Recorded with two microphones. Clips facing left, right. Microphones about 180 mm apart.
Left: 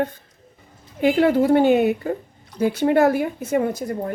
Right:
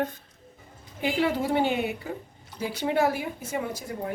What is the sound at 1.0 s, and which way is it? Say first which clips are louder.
A woman's voice: left 9 dB; 55° left (ahead or behind).